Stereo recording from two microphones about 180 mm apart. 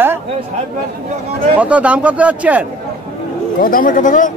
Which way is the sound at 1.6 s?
5° right (ahead or behind).